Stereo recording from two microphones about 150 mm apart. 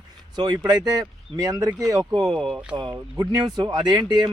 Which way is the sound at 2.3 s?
Centre (ahead or behind).